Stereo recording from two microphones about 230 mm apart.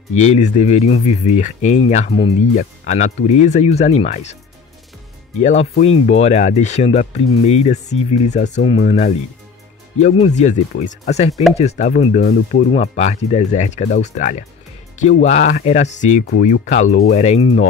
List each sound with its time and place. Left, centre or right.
0.1 s speech: left
5.4 s speech: left